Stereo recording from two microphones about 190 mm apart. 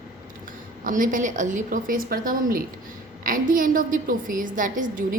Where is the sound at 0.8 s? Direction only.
45° right (ahead or behind).